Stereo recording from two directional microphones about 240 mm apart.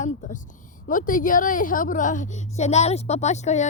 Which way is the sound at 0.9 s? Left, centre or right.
Left.